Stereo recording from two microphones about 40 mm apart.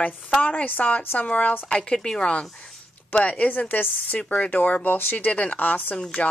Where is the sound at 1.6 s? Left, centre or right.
Left.